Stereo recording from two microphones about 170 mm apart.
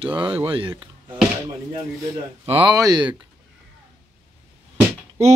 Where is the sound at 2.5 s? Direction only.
30° right (ahead or behind).